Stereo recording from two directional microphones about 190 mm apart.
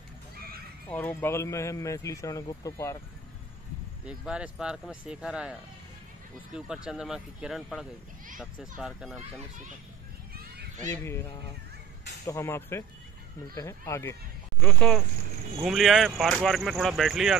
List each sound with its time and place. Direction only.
0.8 s speech: 10° left (ahead or behind)
4.0 s speech: 5° right (ahead or behind)
12.3 s speech: 15° left (ahead or behind)